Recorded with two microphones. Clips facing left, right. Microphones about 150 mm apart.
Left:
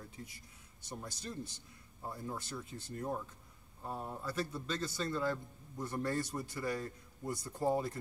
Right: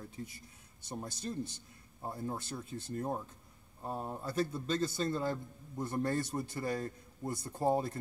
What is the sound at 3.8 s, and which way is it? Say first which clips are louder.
A man's voice: right 2 dB; 30° right (ahead or behind).